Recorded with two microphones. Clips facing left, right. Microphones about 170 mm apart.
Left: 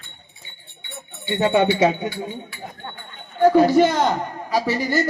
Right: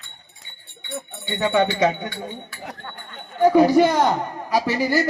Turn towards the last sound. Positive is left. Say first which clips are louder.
# even
turn(degrees=-10)  # may be behind; listen again after turning